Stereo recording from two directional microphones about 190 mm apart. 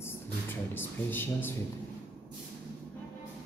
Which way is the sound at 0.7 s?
10° left (ahead or behind).